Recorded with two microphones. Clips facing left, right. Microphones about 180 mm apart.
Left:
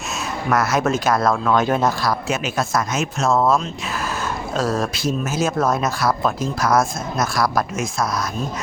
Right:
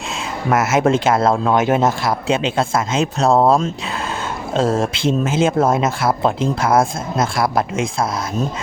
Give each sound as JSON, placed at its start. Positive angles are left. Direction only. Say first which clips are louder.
{"t": 0.5, "sound": "speech", "louder": "right 4 dB", "side_deg": -25}